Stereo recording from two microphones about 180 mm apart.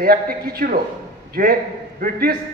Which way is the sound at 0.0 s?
60° right (ahead or behind).